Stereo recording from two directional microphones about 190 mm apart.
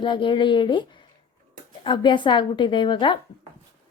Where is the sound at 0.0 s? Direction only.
25° left (ahead or behind).